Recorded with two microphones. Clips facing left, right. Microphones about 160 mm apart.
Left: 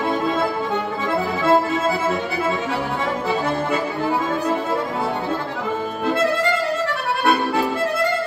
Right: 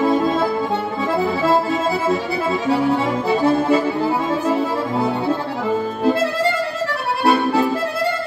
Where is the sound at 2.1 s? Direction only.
35° right (ahead or behind).